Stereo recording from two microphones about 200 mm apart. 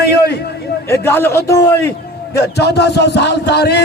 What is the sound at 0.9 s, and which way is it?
Speech, 10° left (ahead or behind).